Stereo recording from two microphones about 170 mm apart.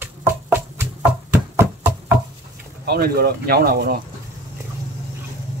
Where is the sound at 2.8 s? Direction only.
65° right (ahead or behind).